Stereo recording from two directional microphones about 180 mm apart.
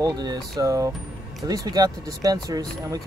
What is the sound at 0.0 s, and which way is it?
Speech, 20° right (ahead or behind).